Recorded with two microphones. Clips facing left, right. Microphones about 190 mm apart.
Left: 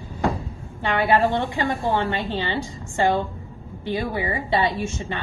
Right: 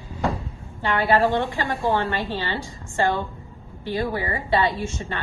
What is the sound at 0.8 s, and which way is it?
A woman's voice, 20° left (ahead or behind).